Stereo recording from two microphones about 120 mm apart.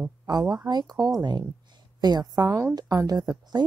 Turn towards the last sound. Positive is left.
turn(degrees=-35)  # may be behind; listen again after turning